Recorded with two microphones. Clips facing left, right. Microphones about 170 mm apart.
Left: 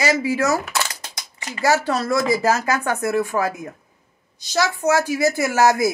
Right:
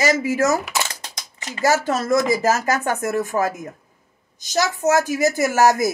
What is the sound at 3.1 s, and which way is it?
A woman's voice, 45° right (ahead or behind).